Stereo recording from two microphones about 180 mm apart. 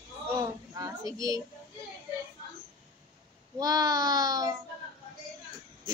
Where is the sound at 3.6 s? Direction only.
20° right (ahead or behind).